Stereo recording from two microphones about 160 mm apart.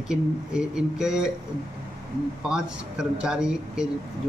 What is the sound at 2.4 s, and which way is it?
Speech, 5° right (ahead or behind).